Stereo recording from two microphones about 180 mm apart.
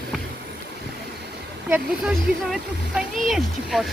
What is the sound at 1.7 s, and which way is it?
Speech, 5° right (ahead or behind).